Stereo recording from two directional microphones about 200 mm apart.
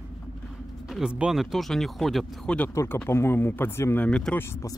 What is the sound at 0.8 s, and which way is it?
Speech, 5° right (ahead or behind).